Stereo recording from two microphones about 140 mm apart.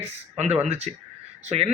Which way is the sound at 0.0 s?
50° right (ahead or behind).